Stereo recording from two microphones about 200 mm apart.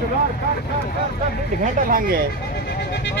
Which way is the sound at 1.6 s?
45° right (ahead or behind).